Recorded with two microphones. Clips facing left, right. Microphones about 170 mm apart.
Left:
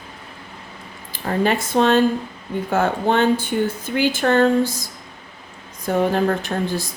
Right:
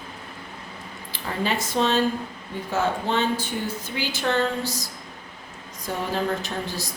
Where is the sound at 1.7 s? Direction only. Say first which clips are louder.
Left 6 dB; 55° left (ahead or behind).